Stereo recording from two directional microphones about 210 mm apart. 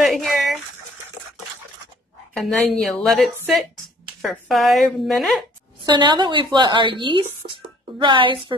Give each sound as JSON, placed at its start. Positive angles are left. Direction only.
{"t": 0.0, "sound": "a sound", "side_deg": 0}
{"t": 2.3, "sound": "a woman's voice", "side_deg": 0}
{"t": 5.9, "sound": "speech", "side_deg": -20}